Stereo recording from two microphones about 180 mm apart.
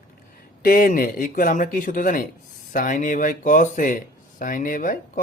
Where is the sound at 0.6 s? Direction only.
50° left (ahead or behind).